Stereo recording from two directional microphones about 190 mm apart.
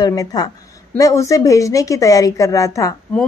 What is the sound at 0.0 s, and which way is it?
A woman's voice, 20° left (ahead or behind).